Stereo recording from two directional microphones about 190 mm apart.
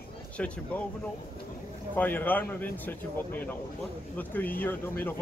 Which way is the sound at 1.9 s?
10° left (ahead or behind).